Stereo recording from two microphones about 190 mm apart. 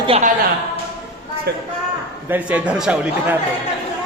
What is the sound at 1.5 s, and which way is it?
Speech, 60° right (ahead or behind).